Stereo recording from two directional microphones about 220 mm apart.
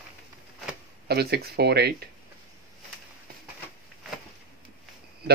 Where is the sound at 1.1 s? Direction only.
45° right (ahead or behind).